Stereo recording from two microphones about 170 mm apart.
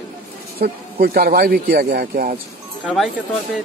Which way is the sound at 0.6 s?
60° right (ahead or behind).